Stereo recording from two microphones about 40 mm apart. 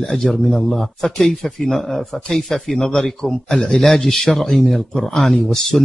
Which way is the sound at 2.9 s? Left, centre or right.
Centre.